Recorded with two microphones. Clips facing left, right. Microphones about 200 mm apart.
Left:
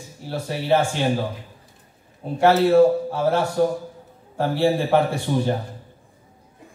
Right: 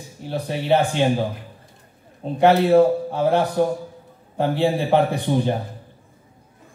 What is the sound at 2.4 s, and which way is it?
Speech, 15° right (ahead or behind).